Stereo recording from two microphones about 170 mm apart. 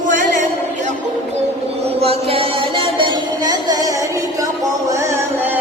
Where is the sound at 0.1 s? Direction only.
50° right (ahead or behind).